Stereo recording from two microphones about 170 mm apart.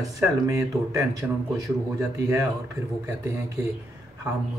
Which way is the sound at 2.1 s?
15° right (ahead or behind).